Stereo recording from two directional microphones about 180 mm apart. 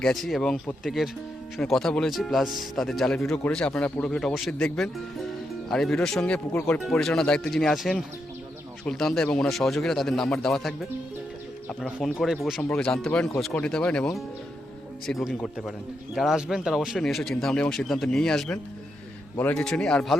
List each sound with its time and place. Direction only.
0.0 s speech: centre (ahead or behind)